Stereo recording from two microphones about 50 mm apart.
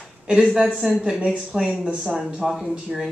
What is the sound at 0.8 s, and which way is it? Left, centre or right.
Speech, centre.